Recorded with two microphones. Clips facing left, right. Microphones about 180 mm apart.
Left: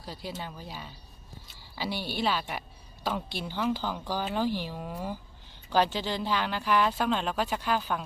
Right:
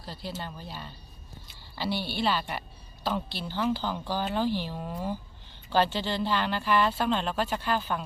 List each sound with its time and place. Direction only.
0.3 s speech: 5° left (ahead or behind)
2.0 s a woman's voice: 45° left (ahead or behind)
2.2 s speech: 10° left (ahead or behind)